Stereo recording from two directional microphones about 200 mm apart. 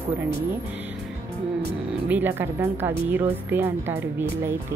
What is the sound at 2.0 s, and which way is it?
Speech, 10° right (ahead or behind).